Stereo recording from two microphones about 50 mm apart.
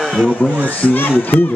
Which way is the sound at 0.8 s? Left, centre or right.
Left.